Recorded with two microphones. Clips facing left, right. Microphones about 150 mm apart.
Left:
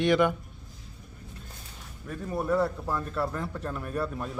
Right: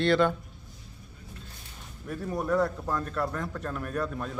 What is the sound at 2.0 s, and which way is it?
A man's voice, 5° left (ahead or behind).